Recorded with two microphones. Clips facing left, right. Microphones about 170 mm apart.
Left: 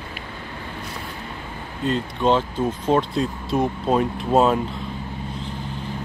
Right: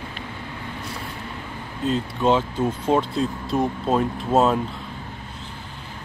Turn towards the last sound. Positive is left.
turn(degrees=0)  # may be behind; listen again after turning